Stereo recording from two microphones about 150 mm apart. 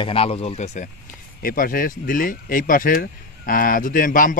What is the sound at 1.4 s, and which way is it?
Speech, 70° left (ahead or behind).